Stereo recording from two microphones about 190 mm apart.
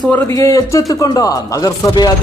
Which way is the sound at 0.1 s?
15° left (ahead or behind).